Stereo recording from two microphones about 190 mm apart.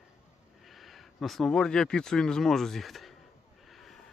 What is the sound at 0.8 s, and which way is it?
Speech, centre (ahead or behind).